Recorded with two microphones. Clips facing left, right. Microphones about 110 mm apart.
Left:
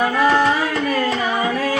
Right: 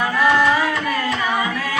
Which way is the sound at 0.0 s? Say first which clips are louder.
Left 1 dB; 35° left (ahead or behind).